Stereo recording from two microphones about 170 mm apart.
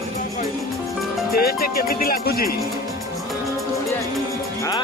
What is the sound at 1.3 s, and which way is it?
Speech, 60° left (ahead or behind).